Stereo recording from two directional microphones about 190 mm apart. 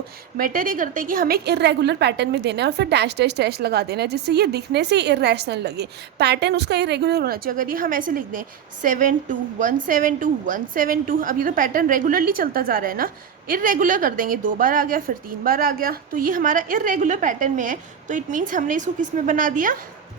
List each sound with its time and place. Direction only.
0.3 s a woman's voice: 45° right (ahead or behind)